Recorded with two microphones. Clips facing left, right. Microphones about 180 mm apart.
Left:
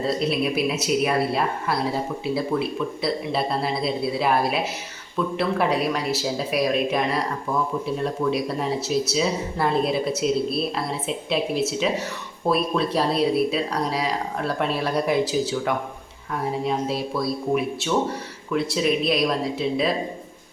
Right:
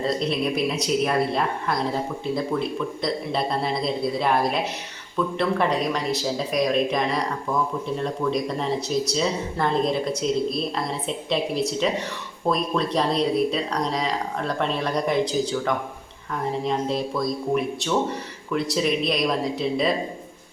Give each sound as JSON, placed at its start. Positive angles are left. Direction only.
{"t": 0.0, "sound": "speech", "side_deg": 5}